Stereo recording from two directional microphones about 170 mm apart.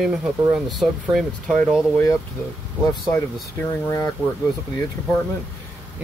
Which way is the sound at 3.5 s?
15° left (ahead or behind).